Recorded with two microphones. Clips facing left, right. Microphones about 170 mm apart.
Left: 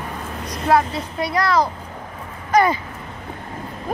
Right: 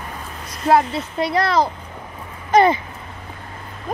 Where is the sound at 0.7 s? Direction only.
25° right (ahead or behind).